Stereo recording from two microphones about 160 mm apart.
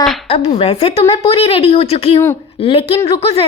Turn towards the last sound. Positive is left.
turn(degrees=35)  # may be behind; listen again after turning